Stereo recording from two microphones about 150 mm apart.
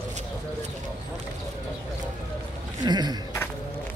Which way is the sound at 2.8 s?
30° right (ahead or behind).